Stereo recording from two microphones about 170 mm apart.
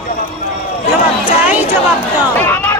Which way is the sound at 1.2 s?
10° right (ahead or behind).